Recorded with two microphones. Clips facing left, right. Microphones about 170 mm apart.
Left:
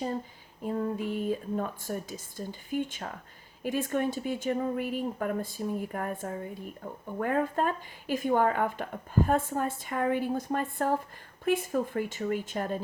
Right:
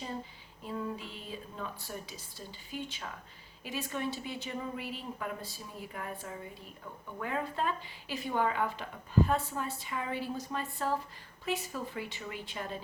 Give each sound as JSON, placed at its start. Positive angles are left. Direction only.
{"t": 0.6, "sound": "a woman's voice", "side_deg": 50}